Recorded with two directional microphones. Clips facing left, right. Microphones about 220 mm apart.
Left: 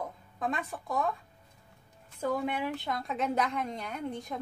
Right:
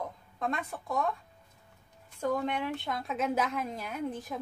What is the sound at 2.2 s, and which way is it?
A woman's voice, 5° left (ahead or behind).